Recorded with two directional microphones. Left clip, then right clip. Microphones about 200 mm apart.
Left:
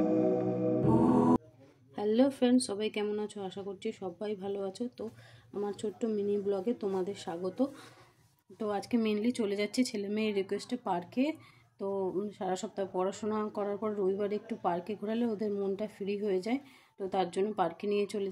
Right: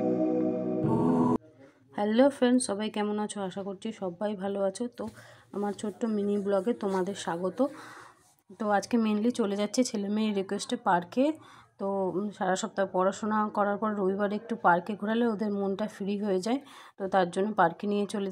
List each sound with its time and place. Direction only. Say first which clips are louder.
0.8 s music: even; centre (ahead or behind)
2.0 s speech: right 4 dB; 15° right (ahead or behind)